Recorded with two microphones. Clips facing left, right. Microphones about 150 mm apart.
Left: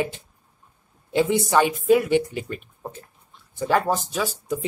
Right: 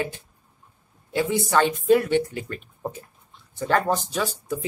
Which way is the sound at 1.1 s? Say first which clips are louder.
Left 3 dB; 20° left (ahead or behind).